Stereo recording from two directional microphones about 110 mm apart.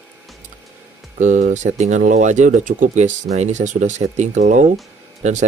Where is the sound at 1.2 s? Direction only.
90° right.